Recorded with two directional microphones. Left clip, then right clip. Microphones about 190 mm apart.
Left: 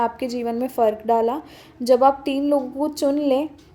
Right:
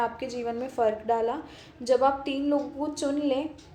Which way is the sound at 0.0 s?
45° left (ahead or behind).